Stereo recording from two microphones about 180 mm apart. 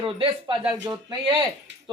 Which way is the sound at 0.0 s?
30° right (ahead or behind).